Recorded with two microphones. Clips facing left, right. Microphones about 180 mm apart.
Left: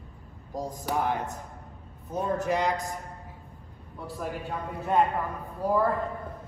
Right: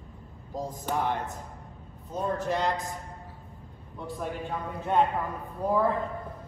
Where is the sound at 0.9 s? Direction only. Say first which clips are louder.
Left 1 dB; centre (ahead or behind).